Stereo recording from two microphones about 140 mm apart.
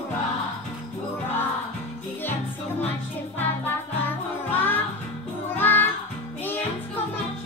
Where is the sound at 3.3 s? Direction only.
15° left (ahead or behind).